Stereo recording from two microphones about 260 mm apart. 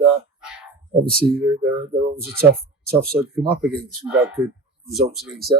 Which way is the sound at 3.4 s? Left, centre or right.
Centre.